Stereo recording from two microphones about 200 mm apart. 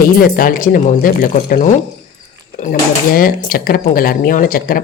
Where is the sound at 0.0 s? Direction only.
45° left (ahead or behind).